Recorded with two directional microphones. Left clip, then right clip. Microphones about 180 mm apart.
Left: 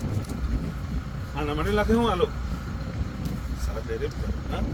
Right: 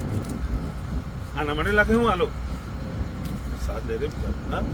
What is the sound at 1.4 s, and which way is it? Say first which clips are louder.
Speech: right 4 dB; 45° left (ahead or behind).